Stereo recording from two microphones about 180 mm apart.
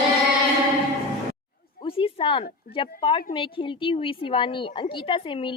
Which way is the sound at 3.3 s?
30° left (ahead or behind).